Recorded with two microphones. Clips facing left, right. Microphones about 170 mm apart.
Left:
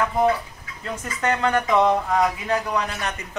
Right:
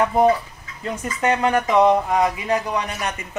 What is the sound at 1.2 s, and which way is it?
Speech, 10° right (ahead or behind).